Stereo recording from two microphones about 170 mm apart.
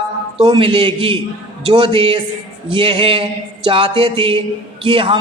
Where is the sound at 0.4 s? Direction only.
30° right (ahead or behind).